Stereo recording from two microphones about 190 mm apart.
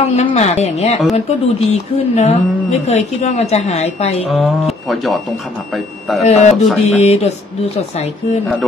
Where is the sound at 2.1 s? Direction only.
35° left (ahead or behind).